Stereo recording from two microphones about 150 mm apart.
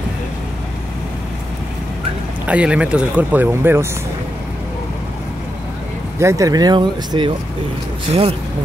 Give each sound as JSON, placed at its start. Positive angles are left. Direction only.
{"t": 2.4, "sound": "speech", "side_deg": -10}
{"t": 6.1, "sound": "speech", "side_deg": -20}